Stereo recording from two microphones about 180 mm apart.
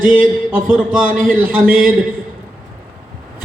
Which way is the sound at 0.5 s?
5° right (ahead or behind).